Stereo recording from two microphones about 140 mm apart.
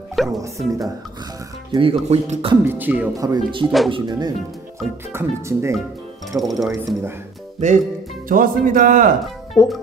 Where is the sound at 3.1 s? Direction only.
25° right (ahead or behind).